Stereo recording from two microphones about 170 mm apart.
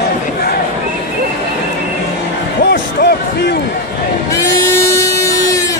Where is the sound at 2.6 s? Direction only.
70° left (ahead or behind).